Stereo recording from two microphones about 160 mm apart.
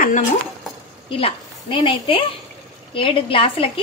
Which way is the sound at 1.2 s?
35° left (ahead or behind).